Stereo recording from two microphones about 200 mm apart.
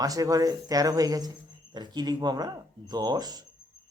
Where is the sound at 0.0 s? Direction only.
15° right (ahead or behind).